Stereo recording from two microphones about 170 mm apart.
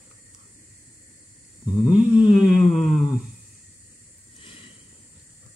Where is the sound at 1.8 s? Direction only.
5° right (ahead or behind).